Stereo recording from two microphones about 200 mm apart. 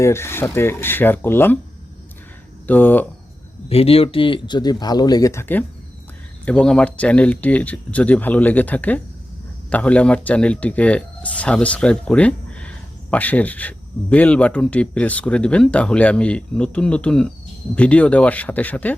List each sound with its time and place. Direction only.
0.0 s speech: 15° left (ahead or behind)
2.6 s speech: 10° left (ahead or behind)
3.7 s speech: 30° left (ahead or behind); by 18.9 s 10° left (ahead or behind)